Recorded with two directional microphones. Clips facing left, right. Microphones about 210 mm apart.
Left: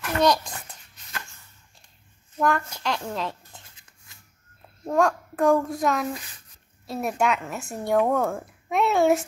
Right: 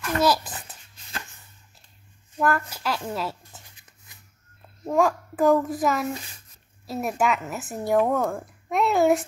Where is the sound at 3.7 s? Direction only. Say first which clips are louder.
Right 1 dB; 20° right (ahead or behind).